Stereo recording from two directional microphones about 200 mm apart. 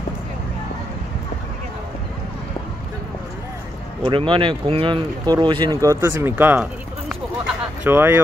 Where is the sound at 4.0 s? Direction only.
25° right (ahead or behind).